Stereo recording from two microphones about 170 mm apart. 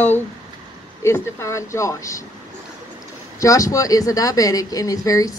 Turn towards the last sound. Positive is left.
turn(degrees=20)  # may be behind; listen again after turning